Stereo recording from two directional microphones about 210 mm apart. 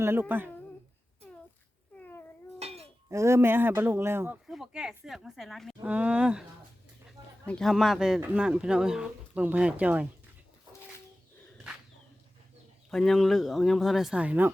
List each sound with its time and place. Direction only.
0.0 s speech: 10° right (ahead or behind)
2.0 s cat: 10° left (ahead or behind)
2.6 s a sound: 30° right (ahead or behind)
3.1 s speech: 15° right (ahead or behind)
7.4 s speech: 5° left (ahead or behind)
12.9 s speech: centre (ahead or behind)